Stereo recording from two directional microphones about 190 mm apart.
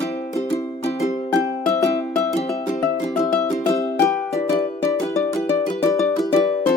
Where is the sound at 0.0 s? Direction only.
35° left (ahead or behind).